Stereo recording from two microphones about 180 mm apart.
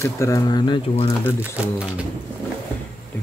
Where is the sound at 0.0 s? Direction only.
15° left (ahead or behind).